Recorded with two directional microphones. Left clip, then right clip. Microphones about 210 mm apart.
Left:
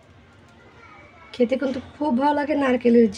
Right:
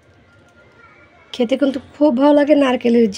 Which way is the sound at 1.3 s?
40° right (ahead or behind).